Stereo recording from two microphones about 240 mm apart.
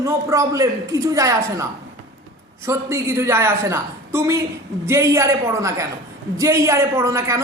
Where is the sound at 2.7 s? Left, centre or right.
Centre.